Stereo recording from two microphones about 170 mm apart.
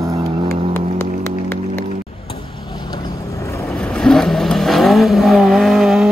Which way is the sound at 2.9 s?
20° left (ahead or behind).